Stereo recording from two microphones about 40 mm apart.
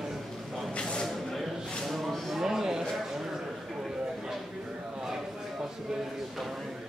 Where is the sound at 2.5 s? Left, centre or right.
Centre.